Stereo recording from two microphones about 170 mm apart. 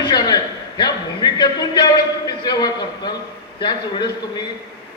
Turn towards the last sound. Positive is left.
turn(degrees=25)  # may be behind; listen again after turning